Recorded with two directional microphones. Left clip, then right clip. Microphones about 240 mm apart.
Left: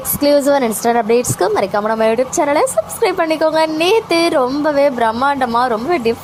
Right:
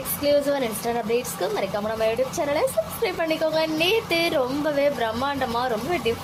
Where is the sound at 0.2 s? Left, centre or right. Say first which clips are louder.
Left 9 dB; left.